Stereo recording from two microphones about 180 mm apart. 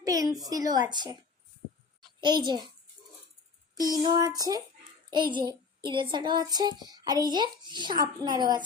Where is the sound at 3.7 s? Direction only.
20° right (ahead or behind).